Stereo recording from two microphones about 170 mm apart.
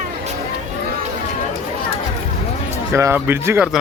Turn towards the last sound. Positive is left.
turn(degrees=-5)  # may be behind; listen again after turning